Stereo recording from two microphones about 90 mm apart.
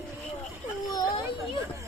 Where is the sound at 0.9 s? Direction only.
55° left (ahead or behind).